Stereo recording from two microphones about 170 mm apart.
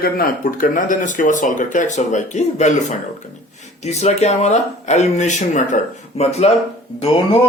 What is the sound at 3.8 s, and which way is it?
Speech, 40° left (ahead or behind).